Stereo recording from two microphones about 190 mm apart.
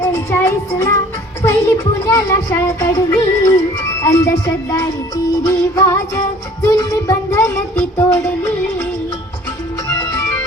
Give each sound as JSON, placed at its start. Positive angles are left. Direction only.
{"t": 0.0, "sound": "child singing", "side_deg": 10}
{"t": 1.4, "sound": "speech", "side_deg": 10}
{"t": 7.9, "sound": "music", "side_deg": 5}
{"t": 9.9, "sound": "music", "side_deg": 20}